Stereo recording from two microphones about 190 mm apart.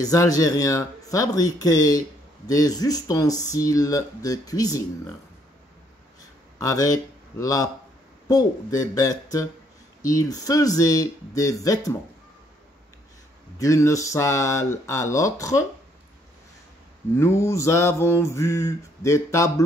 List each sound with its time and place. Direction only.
0.0 s speech: 20° left (ahead or behind)
6.6 s speech: 20° left (ahead or behind)
13.6 s speech: 15° left (ahead or behind)
17.2 s speech: 15° left (ahead or behind)